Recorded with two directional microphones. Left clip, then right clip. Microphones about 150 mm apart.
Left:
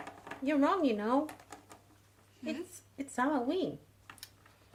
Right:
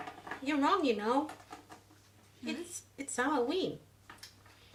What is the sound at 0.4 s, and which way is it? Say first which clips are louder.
Speech: even; 50° left (ahead or behind).